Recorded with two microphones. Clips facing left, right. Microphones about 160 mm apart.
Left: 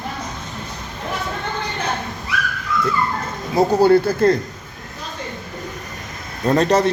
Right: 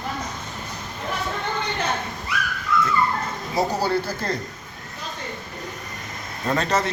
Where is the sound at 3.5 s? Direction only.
55° left (ahead or behind).